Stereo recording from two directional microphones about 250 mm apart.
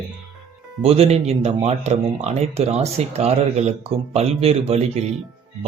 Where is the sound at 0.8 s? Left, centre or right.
Right.